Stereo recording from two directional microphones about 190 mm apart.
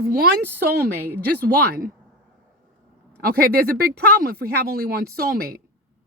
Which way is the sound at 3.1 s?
55° right (ahead or behind).